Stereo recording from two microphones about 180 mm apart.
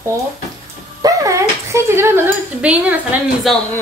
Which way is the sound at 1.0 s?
20° right (ahead or behind).